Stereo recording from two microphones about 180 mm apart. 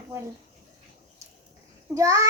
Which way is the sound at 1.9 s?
20° right (ahead or behind).